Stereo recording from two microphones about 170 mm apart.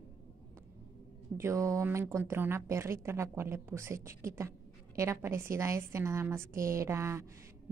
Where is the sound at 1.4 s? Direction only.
20° right (ahead or behind).